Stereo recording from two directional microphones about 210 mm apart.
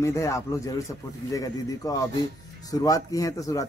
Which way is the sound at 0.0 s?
15° left (ahead or behind).